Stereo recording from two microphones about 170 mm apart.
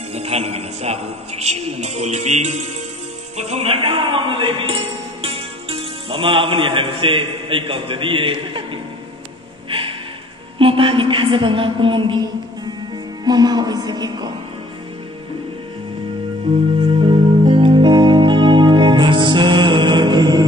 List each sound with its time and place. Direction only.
0.1 s a man's voice: 40° right (ahead or behind)
9.7 s music: 30° right (ahead or behind)
10.6 s a woman's voice: 30° right (ahead or behind)
16.5 s a man's voice: 30° right (ahead or behind)
17.0 s music: 30° right (ahead or behind)